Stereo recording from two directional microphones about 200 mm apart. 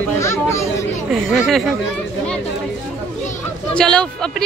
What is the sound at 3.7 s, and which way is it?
Speech, 5° left (ahead or behind).